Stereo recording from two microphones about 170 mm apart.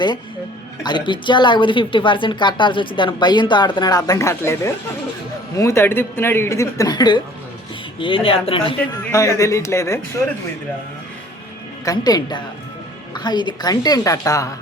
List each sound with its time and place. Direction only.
0.8 s a woman's voice: 25° left (ahead or behind)
9.1 s speech: 20° left (ahead or behind)
11.9 s a woman's voice: 25° left (ahead or behind)